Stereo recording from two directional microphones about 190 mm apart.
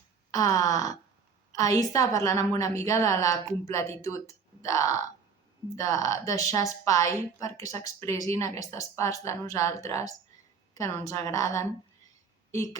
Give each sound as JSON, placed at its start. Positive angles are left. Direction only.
{"t": 0.3, "sound": "a woman's voice", "side_deg": 20}